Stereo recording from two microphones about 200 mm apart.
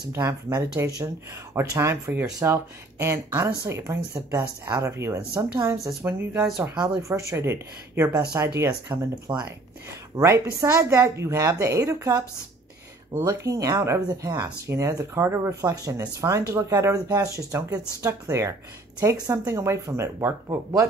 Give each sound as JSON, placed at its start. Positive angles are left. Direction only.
{"t": 0.1, "sound": "speech", "side_deg": -15}